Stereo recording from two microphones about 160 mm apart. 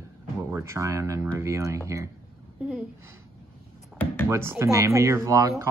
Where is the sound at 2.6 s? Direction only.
5° right (ahead or behind).